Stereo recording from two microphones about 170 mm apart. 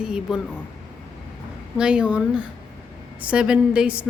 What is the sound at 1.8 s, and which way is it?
A woman's voice, 5° right (ahead or behind).